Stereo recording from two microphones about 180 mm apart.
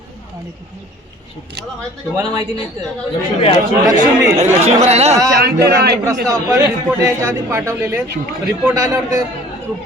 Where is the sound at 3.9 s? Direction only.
20° right (ahead or behind).